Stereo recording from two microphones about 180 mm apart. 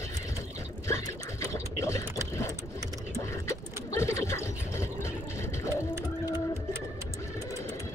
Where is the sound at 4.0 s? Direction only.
15° left (ahead or behind).